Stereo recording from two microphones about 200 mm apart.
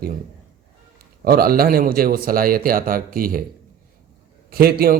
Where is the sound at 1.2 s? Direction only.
50° right (ahead or behind).